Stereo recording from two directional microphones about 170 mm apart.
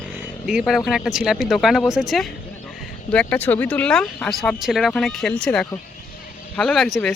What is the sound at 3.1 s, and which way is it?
Speech, 10° left (ahead or behind).